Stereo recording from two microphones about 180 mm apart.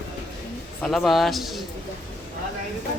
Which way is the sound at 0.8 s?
Centre (ahead or behind).